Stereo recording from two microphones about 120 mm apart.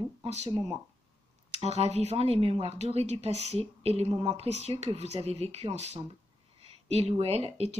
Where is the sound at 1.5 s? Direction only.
65° right (ahead or behind).